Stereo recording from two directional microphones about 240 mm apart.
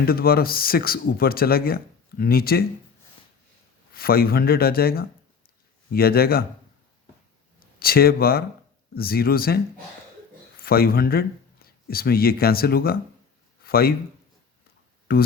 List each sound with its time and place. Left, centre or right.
0.0 s speech: left
3.9 s speech: left
7.8 s speech: left
10.6 s a man's voice: left
15.1 s speech: left